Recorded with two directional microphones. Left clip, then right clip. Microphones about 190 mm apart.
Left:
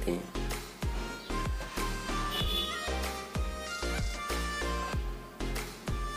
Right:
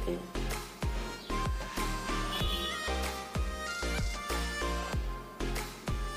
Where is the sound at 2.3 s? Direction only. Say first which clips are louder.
Left 1 dB; centre (ahead or behind).